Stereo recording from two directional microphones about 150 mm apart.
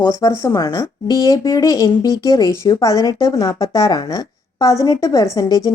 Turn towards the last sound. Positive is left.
turn(degrees=25)  # may be behind; listen again after turning